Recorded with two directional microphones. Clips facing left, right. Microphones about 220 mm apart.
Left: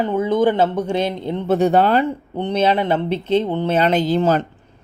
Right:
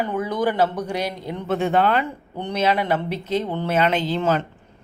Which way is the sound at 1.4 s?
40° left (ahead or behind).